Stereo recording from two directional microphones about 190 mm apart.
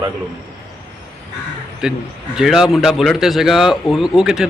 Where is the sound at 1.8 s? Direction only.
5° right (ahead or behind).